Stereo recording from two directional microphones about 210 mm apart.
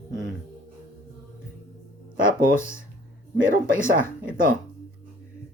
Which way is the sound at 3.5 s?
40° right (ahead or behind).